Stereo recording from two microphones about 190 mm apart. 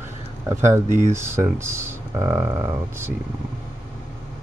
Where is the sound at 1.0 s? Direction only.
15° right (ahead or behind).